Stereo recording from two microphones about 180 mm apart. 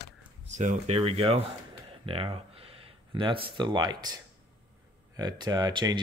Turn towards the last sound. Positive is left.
turn(degrees=-25)  # may be behind; listen again after turning